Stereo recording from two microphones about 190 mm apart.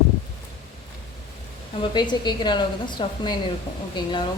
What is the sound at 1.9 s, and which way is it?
A woman's voice, 25° left (ahead or behind).